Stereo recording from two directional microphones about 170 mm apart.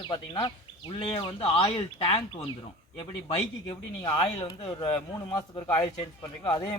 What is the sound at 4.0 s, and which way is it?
Speech, 25° left (ahead or behind).